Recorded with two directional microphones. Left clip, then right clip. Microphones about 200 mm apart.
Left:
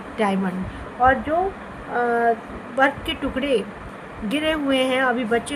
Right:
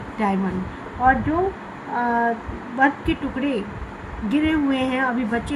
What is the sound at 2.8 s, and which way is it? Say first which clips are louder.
Speech: even; 60° left (ahead or behind).